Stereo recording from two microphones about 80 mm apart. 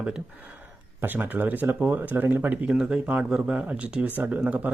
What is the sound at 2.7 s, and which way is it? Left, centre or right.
Speech, centre.